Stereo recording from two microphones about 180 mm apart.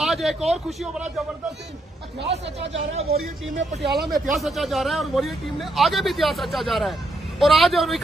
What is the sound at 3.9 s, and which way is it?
Speech, 65° right (ahead or behind).